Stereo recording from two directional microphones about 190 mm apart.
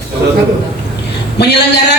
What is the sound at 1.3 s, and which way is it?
Speech, 60° left (ahead or behind).